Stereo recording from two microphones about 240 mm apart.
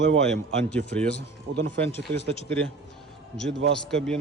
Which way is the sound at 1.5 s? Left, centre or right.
Right.